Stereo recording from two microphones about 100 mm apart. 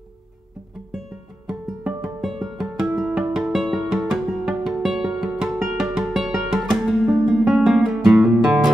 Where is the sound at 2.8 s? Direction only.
5° right (ahead or behind).